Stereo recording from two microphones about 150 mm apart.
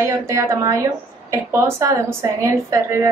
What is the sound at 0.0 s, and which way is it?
A woman's voice, 20° right (ahead or behind).